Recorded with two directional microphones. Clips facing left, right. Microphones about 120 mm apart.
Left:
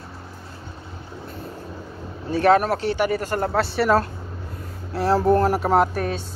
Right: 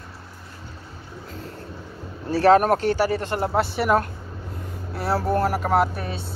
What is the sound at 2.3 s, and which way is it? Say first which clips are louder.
Speech: right 1 dB; 35° right (ahead or behind).